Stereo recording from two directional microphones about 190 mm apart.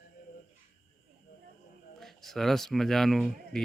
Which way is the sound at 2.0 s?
Centre (ahead or behind).